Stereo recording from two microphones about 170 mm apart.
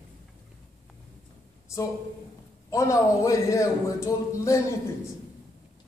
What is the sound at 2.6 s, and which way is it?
A man's voice, 15° left (ahead or behind).